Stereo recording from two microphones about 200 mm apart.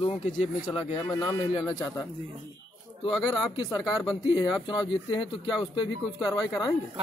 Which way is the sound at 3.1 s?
Centre (ahead or behind).